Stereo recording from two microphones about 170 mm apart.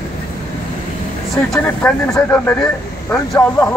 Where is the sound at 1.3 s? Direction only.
5° left (ahead or behind).